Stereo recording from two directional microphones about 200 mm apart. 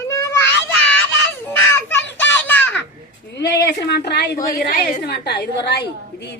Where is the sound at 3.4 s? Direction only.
55° left (ahead or behind).